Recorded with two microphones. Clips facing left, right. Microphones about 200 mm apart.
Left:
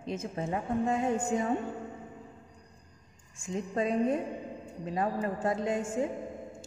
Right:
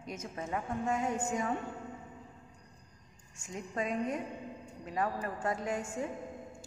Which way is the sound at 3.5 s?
30° left (ahead or behind).